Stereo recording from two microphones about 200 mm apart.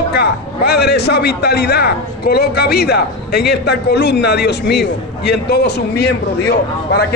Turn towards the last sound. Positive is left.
turn(degrees=55)  # may be behind; listen again after turning